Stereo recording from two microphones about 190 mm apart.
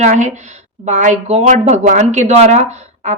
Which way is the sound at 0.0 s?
40° right (ahead or behind).